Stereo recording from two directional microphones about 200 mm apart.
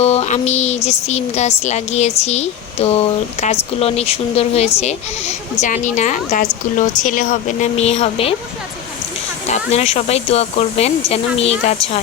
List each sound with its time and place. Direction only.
0.0 s speech: 30° left (ahead or behind)
9.5 s speech: 30° left (ahead or behind)